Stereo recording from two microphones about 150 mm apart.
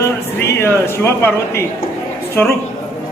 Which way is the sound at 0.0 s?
20° left (ahead or behind).